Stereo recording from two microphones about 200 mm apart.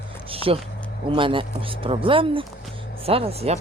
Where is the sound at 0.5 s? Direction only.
30° right (ahead or behind).